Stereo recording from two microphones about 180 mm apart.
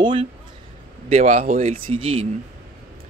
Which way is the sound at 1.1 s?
35° right (ahead or behind).